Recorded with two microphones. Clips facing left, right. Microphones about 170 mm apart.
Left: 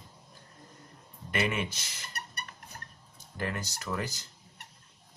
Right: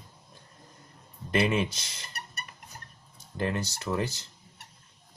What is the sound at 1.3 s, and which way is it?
Speech, 30° right (ahead or behind).